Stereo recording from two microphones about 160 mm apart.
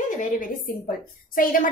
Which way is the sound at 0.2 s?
55° left (ahead or behind).